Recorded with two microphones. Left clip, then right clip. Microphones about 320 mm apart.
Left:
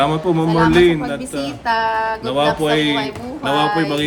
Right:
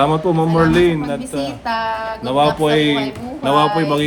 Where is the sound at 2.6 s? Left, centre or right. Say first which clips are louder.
Right 2 dB; centre.